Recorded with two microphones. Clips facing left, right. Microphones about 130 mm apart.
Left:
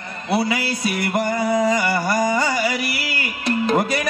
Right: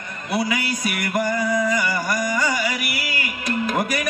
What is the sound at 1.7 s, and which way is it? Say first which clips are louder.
Music: left 3 dB; 30° left (ahead or behind).